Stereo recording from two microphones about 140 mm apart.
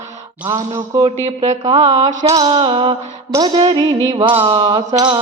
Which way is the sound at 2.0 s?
25° right (ahead or behind).